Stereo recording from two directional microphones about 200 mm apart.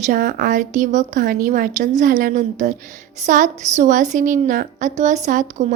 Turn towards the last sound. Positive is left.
turn(degrees=-40)  # may be behind; listen again after turning